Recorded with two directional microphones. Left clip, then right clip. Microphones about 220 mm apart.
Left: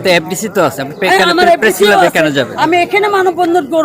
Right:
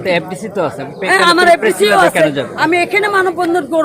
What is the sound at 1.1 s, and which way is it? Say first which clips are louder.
Speech: even; centre (ahead or behind).